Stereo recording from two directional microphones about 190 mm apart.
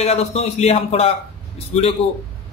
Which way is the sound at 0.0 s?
35° left (ahead or behind).